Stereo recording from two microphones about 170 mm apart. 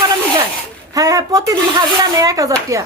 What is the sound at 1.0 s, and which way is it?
A woman's voice, 20° right (ahead or behind).